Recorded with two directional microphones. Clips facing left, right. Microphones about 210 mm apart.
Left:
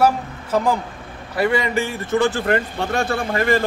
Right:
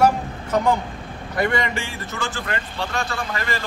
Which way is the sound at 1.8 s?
55° left (ahead or behind).